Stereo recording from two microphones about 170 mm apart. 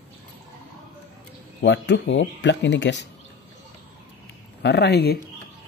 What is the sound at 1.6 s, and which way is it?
Speech, 90° left.